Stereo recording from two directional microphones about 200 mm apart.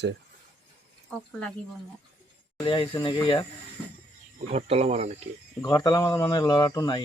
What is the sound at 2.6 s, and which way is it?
Speech, 25° left (ahead or behind).